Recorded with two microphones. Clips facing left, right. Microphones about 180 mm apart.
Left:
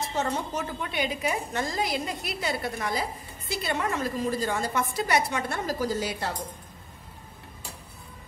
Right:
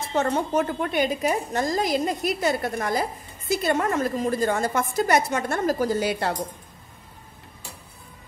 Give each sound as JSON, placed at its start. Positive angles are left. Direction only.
{"t": 0.1, "sound": "a woman's voice", "side_deg": -55}